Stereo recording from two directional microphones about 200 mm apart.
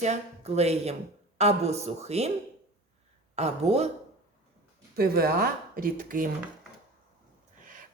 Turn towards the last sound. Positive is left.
turn(degrees=-45)  # may be behind; listen again after turning